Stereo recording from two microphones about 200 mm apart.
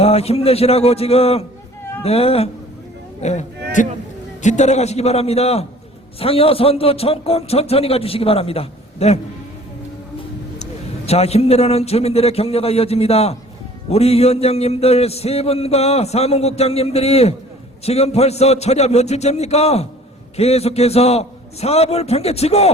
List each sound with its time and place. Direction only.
0.0 s a man's voice: 30° left (ahead or behind)
10.6 s a man's voice: 30° left (ahead or behind)